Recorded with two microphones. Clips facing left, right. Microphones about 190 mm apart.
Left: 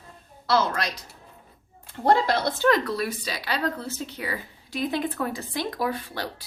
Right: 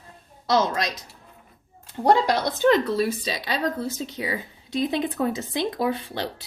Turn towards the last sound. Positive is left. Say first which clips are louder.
# right 3 dB
turn(degrees=-20)  # may be behind; listen again after turning